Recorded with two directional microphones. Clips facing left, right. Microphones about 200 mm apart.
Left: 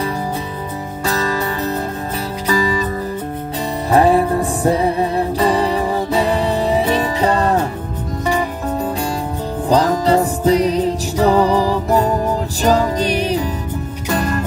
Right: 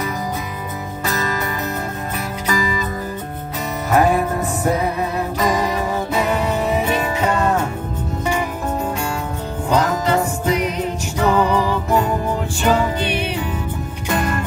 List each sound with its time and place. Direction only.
1.0 s music: 30° left (ahead or behind)
3.9 s music: 30° left (ahead or behind)